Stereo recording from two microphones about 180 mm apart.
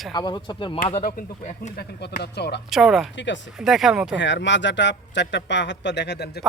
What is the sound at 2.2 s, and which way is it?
Speech, 70° left (ahead or behind).